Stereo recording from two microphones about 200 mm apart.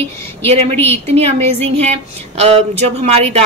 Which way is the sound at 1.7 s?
30° right (ahead or behind).